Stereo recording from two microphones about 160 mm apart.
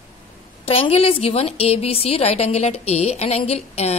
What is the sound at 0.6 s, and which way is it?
A woman's voice, 40° left (ahead or behind).